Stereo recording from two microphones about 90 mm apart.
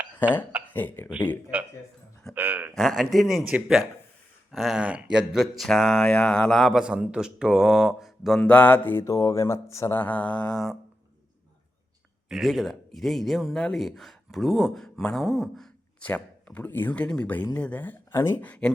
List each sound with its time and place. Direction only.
0.7 s speech: 20° left (ahead or behind)
1.5 s speech: 20° right (ahead or behind)
2.7 s a man's voice: centre (ahead or behind)
4.8 s speech: 15° right (ahead or behind)
5.6 s speech: 5° left (ahead or behind)
6.7 s speech: 10° right (ahead or behind)
8.4 s speech: 15° left (ahead or behind); by 9.9 s 35° left (ahead or behind)
9.9 s speech: 15° left (ahead or behind)
12.3 s a man's voice: centre (ahead or behind)
16.0 s speech: 15° left (ahead or behind)